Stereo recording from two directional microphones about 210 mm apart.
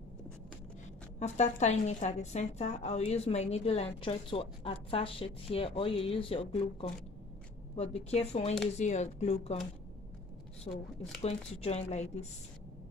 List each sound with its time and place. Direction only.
1.2 s a woman's voice: 35° left (ahead or behind)
10.7 s a woman's voice: 30° left (ahead or behind)